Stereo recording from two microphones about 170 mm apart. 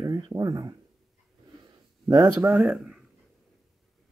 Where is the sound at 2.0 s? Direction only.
20° right (ahead or behind).